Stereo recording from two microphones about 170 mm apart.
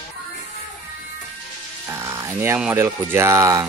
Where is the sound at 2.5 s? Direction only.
10° right (ahead or behind).